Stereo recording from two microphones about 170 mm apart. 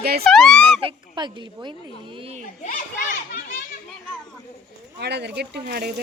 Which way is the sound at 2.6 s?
50° left (ahead or behind).